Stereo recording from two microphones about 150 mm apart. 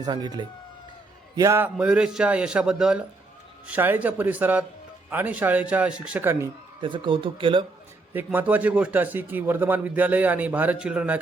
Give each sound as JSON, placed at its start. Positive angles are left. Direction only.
{"t": 0.0, "sound": "speech", "side_deg": -25}
{"t": 1.4, "sound": "a man's voice", "side_deg": -15}
{"t": 1.7, "sound": "a man's voice", "side_deg": -5}
{"t": 6.8, "sound": "speech", "side_deg": -35}
{"t": 8.1, "sound": "a man's voice", "side_deg": -10}